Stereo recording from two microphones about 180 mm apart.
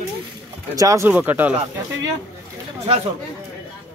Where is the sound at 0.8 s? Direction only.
15° right (ahead or behind).